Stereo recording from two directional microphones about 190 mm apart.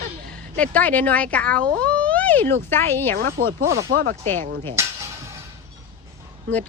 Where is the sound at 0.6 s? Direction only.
10° left (ahead or behind).